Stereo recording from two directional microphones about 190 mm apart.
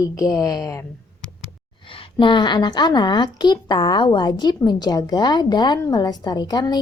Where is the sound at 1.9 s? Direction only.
25° left (ahead or behind).